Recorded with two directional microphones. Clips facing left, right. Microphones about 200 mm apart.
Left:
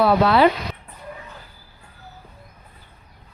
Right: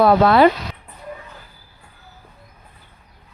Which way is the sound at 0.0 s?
50° right (ahead or behind).